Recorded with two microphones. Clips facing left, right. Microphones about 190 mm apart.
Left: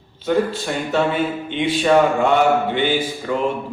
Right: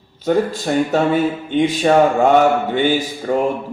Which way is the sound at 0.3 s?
40° right (ahead or behind).